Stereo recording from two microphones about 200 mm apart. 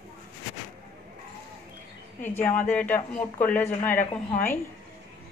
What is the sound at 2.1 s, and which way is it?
Speech, 10° left (ahead or behind).